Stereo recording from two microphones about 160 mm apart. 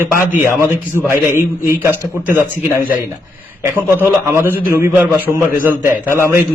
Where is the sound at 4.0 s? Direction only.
15° right (ahead or behind).